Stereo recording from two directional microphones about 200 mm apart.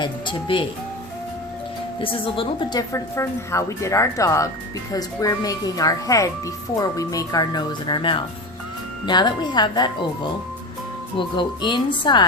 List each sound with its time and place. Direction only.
0.0 s speech: 25° left (ahead or behind)
2.0 s a woman's voice: 25° left (ahead or behind)
11.2 s speech: 25° left (ahead or behind)